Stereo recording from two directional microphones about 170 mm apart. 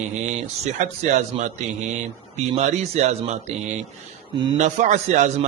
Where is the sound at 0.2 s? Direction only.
45° right (ahead or behind).